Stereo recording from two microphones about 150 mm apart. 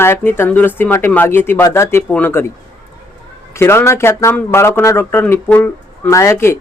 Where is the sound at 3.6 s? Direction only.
15° left (ahead or behind).